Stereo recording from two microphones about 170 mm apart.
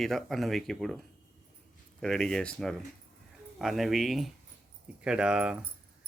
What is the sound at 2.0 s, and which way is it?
Speech, 5° left (ahead or behind).